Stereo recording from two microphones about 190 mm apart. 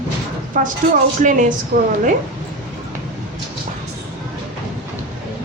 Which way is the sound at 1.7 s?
55° right (ahead or behind).